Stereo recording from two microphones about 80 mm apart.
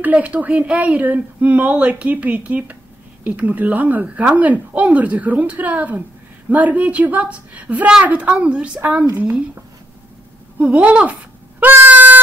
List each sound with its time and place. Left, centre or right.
0.0 s speech: centre